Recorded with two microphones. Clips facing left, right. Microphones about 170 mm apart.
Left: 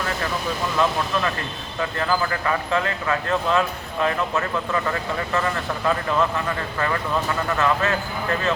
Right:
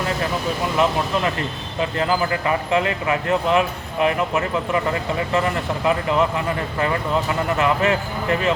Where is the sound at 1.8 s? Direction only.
20° right (ahead or behind).